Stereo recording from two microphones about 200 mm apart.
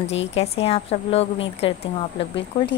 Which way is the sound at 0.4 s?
30° left (ahead or behind).